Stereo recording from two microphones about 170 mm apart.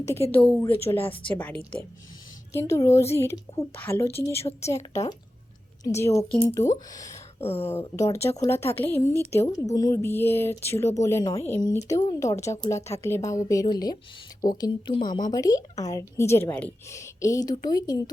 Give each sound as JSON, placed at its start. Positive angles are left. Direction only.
{"t": 0.4, "sound": "speech", "side_deg": 15}
{"t": 7.4, "sound": "speech", "side_deg": 35}
{"t": 7.7, "sound": "a woman's voice", "side_deg": 15}